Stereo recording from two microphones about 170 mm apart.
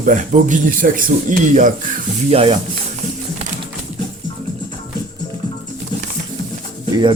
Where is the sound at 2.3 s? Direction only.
35° right (ahead or behind).